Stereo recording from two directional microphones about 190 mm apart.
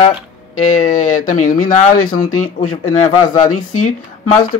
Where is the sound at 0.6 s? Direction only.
45° left (ahead or behind).